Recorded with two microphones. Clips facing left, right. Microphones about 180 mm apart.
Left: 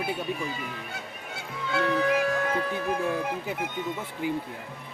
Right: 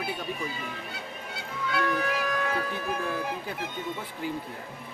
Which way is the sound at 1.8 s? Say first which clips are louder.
Left 5 dB; 25° left (ahead or behind).